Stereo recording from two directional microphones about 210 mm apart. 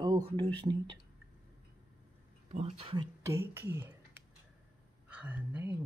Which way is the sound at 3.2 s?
10° right (ahead or behind).